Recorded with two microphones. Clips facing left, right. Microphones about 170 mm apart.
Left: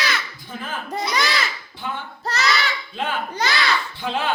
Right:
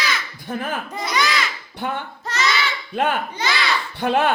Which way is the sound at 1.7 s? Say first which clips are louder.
Right 7 dB; 65° right (ahead or behind).